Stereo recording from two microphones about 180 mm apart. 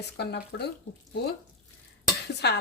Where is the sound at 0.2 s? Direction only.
65° left (ahead or behind).